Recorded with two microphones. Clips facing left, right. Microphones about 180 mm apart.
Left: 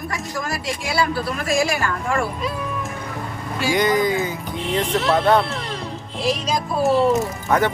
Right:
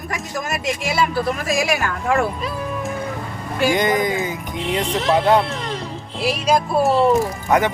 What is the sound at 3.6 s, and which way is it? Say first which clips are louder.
Speech: right 1 dB; 20° right (ahead or behind).